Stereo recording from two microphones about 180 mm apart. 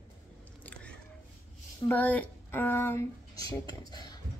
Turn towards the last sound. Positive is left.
turn(degrees=20)  # may be behind; listen again after turning